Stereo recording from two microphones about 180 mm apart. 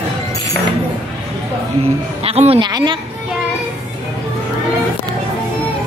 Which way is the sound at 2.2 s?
35° right (ahead or behind).